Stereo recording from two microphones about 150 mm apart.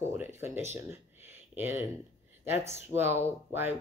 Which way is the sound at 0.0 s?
15° right (ahead or behind).